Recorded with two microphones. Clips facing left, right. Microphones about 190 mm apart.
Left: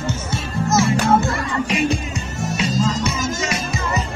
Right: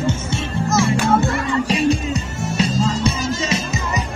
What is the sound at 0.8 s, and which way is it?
Music, 35° right (ahead or behind).